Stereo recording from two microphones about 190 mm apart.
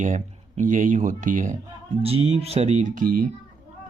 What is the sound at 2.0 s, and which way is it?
Speech, 30° right (ahead or behind).